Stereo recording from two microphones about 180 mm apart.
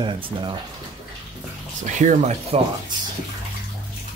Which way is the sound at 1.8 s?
45° right (ahead or behind).